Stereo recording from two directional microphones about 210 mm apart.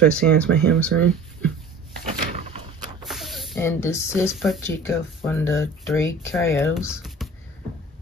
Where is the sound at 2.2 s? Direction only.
35° right (ahead or behind).